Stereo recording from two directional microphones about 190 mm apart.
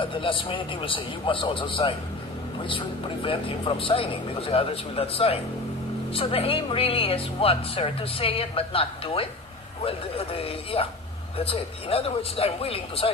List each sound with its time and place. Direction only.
0.0 s a man's voice: 25° left (ahead or behind)